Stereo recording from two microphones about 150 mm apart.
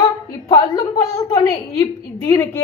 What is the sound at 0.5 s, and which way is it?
A woman's voice, 20° left (ahead or behind).